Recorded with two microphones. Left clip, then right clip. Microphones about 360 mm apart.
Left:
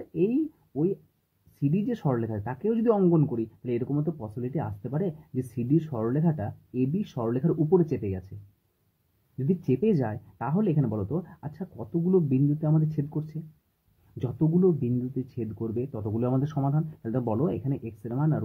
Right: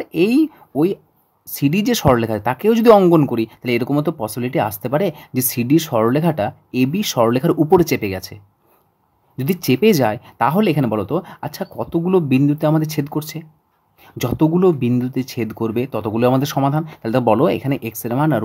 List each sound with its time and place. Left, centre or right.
0.2 s speech: right
9.6 s speech: right